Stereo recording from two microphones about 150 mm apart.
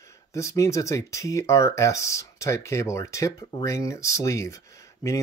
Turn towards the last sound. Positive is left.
turn(degrees=20)  # may be behind; listen again after turning